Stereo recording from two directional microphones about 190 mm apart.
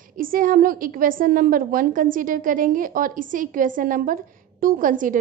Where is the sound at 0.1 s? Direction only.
45° right (ahead or behind).